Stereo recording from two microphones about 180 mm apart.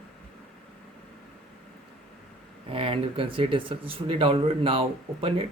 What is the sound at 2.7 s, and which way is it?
Speech, 30° right (ahead or behind).